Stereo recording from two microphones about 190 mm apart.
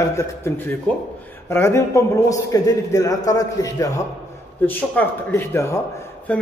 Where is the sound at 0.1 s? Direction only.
15° left (ahead or behind).